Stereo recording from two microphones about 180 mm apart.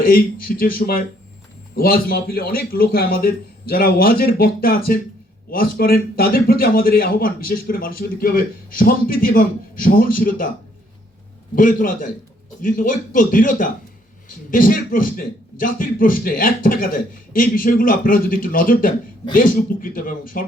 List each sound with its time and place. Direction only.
0.0 s a man's voice: 55° left (ahead or behind)
11.5 s a man's voice: 50° left (ahead or behind)